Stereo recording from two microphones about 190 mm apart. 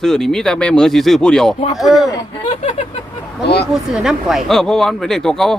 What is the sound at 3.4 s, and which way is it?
Speech, 60° left (ahead or behind).